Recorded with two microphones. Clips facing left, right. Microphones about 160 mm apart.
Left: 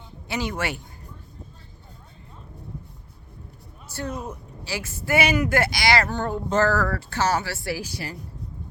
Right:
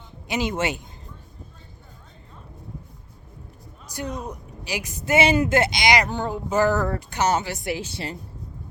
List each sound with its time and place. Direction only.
0.3 s speech: 20° right (ahead or behind)
3.9 s a sound: 15° right (ahead or behind)
4.3 s speech: 15° right (ahead or behind)